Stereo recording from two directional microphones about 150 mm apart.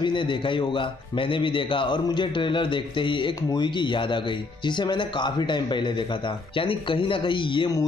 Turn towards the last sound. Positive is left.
turn(degrees=30)  # may be behind; listen again after turning